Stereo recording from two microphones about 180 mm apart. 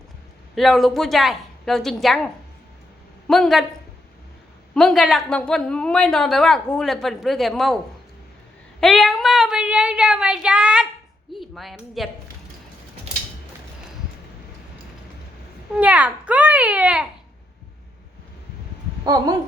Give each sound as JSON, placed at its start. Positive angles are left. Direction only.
{"t": 0.5, "sound": "a woman's voice", "side_deg": 0}
{"t": 4.7, "sound": "a woman's voice", "side_deg": 0}
{"t": 8.8, "sound": "speech", "side_deg": 0}
{"t": 15.7, "sound": "a child's voice", "side_deg": -5}
{"t": 19.1, "sound": "speech", "side_deg": -20}